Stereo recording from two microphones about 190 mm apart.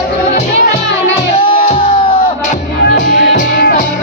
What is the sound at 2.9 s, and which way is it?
Music, 45° left (ahead or behind).